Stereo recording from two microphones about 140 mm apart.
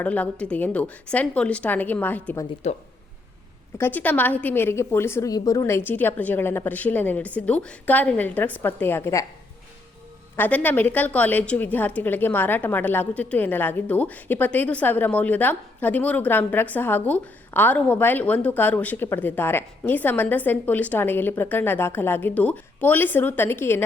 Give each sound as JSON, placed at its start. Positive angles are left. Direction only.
{"t": 0.0, "sound": "a woman's voice", "side_deg": 10}
{"t": 2.6, "sound": "speech", "side_deg": 50}
{"t": 3.8, "sound": "a woman's voice", "side_deg": 15}
{"t": 10.3, "sound": "a woman's voice", "side_deg": 15}